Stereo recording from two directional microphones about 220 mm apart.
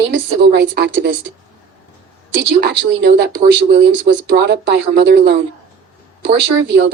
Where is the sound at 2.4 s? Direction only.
50° right (ahead or behind).